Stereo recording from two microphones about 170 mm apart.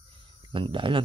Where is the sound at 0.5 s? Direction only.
30° right (ahead or behind).